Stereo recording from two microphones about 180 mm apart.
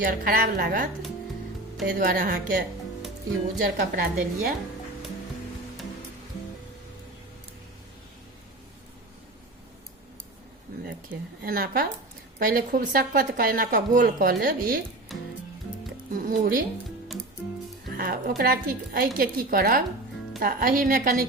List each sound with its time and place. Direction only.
0.0 s a woman's voice: 50° right (ahead or behind)
2.0 s a woman's voice: 55° right (ahead or behind)
11.4 s a woman's voice: 55° right (ahead or behind)
15.1 s music: centre (ahead or behind)
16.2 s a woman's voice: 50° right (ahead or behind)
17.9 s a woman's voice: 55° right (ahead or behind)